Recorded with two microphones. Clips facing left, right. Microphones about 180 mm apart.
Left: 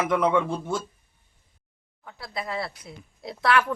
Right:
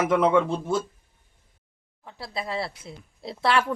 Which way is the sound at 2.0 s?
25° right (ahead or behind).